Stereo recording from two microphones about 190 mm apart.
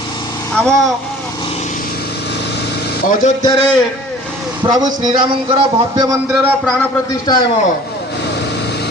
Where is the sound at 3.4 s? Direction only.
25° left (ahead or behind).